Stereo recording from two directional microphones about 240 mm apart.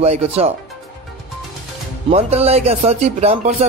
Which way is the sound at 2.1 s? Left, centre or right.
Right.